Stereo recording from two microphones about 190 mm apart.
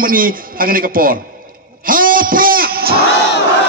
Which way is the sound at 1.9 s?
45° right (ahead or behind).